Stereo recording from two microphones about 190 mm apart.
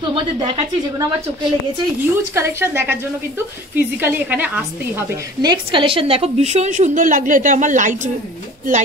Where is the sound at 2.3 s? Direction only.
15° right (ahead or behind).